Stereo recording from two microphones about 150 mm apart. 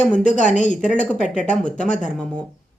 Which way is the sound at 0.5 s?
55° left (ahead or behind).